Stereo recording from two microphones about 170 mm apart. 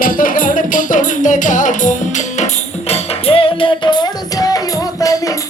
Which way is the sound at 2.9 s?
35° left (ahead or behind).